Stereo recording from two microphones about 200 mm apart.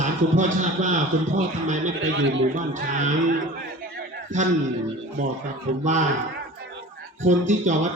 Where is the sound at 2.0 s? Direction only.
70° right (ahead or behind).